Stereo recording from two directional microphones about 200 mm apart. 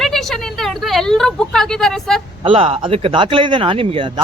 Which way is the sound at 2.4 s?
30° right (ahead or behind).